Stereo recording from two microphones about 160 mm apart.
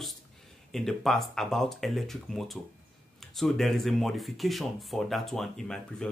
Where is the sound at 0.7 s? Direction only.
Centre (ahead or behind).